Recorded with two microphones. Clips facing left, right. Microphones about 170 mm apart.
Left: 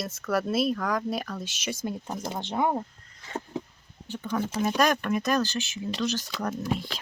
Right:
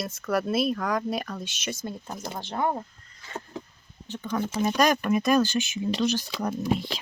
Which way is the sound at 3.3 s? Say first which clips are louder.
Left 3 dB; 10° left (ahead or behind).